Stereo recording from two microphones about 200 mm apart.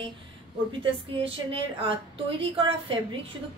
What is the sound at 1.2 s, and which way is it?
A woman's voice, 25° right (ahead or behind).